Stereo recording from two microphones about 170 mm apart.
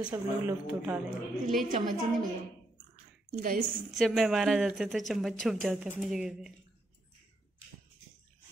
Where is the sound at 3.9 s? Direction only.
Centre (ahead or behind).